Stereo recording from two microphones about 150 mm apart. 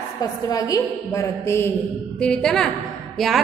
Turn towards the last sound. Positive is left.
turn(degrees=0)  # may be behind; listen again after turning